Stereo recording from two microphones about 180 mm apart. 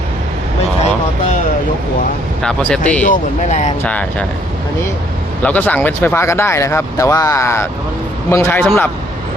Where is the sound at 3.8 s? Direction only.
5° left (ahead or behind).